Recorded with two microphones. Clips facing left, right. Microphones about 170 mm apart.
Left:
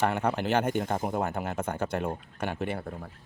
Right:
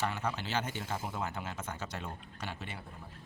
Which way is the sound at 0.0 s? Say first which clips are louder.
Left 9 dB; 60° left (ahead or behind).